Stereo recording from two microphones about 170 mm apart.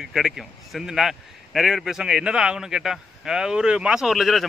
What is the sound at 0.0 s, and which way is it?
A man's voice, centre (ahead or behind).